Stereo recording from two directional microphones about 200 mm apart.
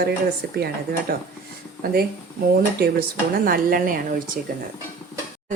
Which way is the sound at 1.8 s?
50° right (ahead or behind).